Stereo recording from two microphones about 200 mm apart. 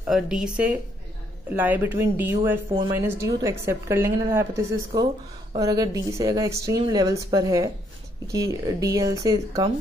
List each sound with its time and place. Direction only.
0.0 s speech: 5° right (ahead or behind)